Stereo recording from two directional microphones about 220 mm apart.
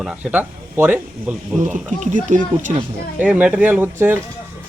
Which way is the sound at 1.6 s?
35° right (ahead or behind).